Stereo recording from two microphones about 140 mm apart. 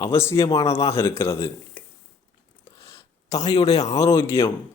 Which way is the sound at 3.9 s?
20° left (ahead or behind).